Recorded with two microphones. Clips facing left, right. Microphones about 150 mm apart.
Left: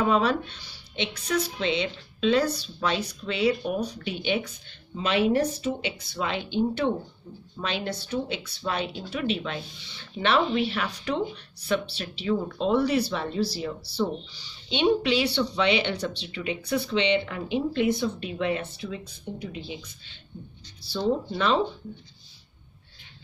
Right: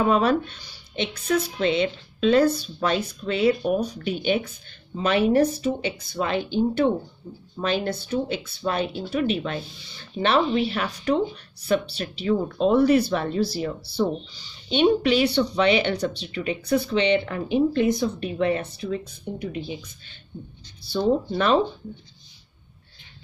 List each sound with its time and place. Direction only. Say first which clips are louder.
0.0 s speech: right 3 dB; 45° right (ahead or behind)
20.8 s speech: right 4 dB; 55° right (ahead or behind)